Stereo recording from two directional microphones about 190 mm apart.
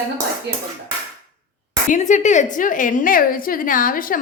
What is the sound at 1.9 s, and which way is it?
A woman's voice, 40° left (ahead or behind).